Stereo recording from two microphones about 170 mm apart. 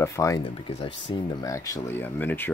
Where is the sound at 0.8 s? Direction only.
30° left (ahead or behind); by 2.5 s 10° left (ahead or behind).